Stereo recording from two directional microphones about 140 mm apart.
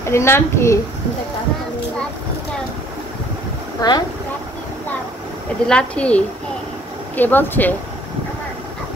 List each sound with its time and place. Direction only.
0.0 s a child's voice: 20° left (ahead or behind)
3.8 s a child's voice: 25° left (ahead or behind)
5.7 s a woman's voice: 10° left (ahead or behind)